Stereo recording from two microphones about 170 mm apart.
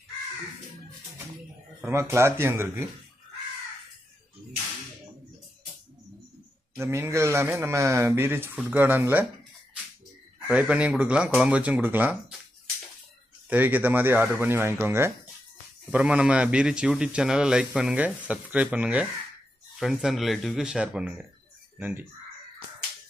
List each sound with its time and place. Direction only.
1.8 s speech: 15° right (ahead or behind)
6.8 s speech: 15° right (ahead or behind)
10.5 s speech: 5° right (ahead or behind)
13.5 s a man's voice: 10° right (ahead or behind)